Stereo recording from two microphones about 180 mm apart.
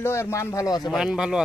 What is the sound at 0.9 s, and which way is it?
Speech, 5° right (ahead or behind).